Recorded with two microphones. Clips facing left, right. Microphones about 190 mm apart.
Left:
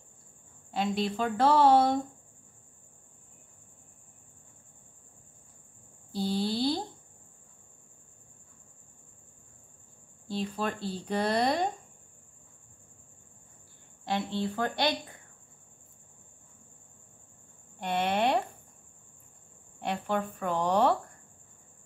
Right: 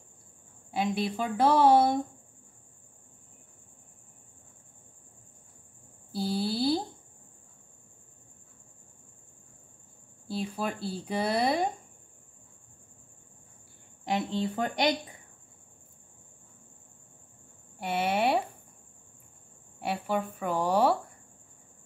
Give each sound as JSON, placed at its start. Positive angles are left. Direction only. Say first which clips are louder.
{"t": 0.7, "sound": "speech", "louder": "even", "side_deg": -10}
{"t": 6.1, "sound": "a sound", "louder": "even", "side_deg": -5}
{"t": 10.2, "sound": "speech", "louder": "even", "side_deg": -10}
{"t": 14.0, "sound": "speech", "louder": "right 1 dB", "side_deg": -20}
{"t": 17.7, "sound": "speech", "louder": "even", "side_deg": -5}
{"t": 19.8, "sound": "speech", "louder": "right 1 dB", "side_deg": -5}